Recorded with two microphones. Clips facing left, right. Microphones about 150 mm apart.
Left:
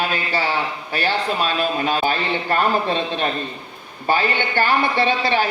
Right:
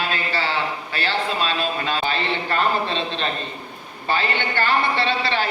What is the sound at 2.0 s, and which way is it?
A man's voice, 45° left (ahead or behind).